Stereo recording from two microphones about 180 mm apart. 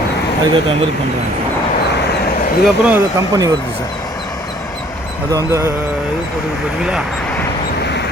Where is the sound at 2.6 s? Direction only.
5° right (ahead or behind).